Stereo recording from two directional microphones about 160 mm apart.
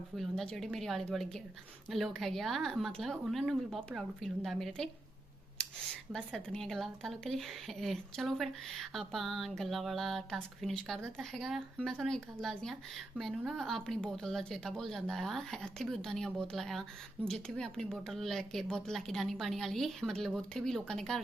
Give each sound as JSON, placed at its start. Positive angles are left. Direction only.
{"t": 0.2, "sound": "speech", "side_deg": 0}
{"t": 5.6, "sound": "a sound", "side_deg": 5}
{"t": 6.1, "sound": "speech", "side_deg": 5}